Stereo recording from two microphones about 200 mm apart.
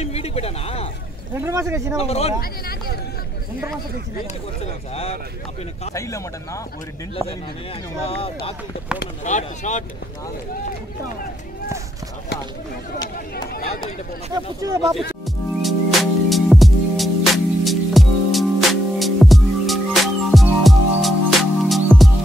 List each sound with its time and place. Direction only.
0.0 s a sound: 30° left (ahead or behind)
1.3 s speech: 15° right (ahead or behind)
2.0 s speech: 30° left (ahead or behind)
2.4 s speech: 50° left (ahead or behind)
5.9 s speech: 15° left (ahead or behind)
8.0 s speech: 30° left (ahead or behind)
14.3 s speech: 15° right (ahead or behind)
15.2 s music: centre (ahead or behind)